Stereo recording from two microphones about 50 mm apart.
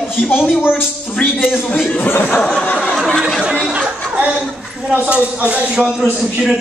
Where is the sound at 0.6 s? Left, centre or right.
Left.